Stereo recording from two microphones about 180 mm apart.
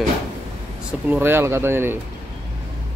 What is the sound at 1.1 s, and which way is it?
Speech, 10° right (ahead or behind).